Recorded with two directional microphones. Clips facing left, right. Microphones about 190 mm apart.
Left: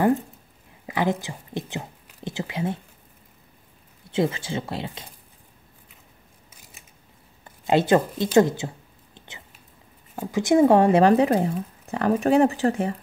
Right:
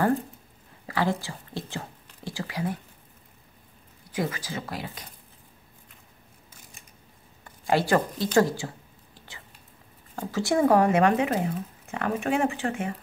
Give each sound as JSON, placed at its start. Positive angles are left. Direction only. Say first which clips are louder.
{"t": 0.8, "sound": "a woman's voice", "louder": "left 2 dB", "side_deg": 20}
{"t": 4.1, "sound": "speech", "louder": "left 6 dB", "side_deg": 25}
{"t": 7.4, "sound": "a sound", "louder": "left 4 dB", "side_deg": 20}
{"t": 10.1, "sound": "speech", "louder": "left 6 dB", "side_deg": 15}